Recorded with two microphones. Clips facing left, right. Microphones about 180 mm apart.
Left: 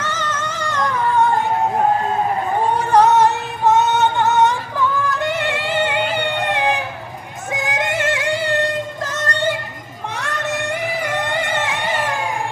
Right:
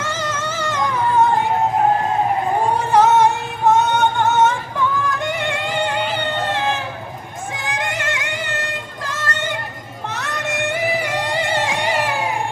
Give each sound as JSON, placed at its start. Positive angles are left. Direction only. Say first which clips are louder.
{"t": 0.0, "sound": "music", "louder": "even", "side_deg": -10}
{"t": 2.9, "sound": "music", "louder": "left 1 dB", "side_deg": -5}
{"t": 7.7, "sound": "music", "louder": "left 4 dB", "side_deg": 25}
{"t": 10.2, "sound": "music", "louder": "even", "side_deg": -10}